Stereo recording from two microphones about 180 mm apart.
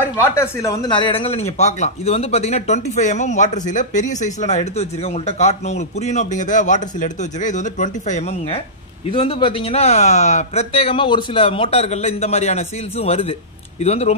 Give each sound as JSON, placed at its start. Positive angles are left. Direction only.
{"t": 0.3, "sound": "a man's voice", "side_deg": 15}
{"t": 9.1, "sound": "a man's voice", "side_deg": 25}